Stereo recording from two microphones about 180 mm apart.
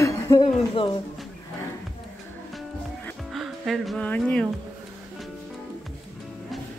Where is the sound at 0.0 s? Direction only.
25° left (ahead or behind).